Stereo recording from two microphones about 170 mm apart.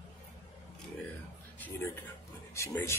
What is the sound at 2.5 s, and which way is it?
Speech, 15° left (ahead or behind).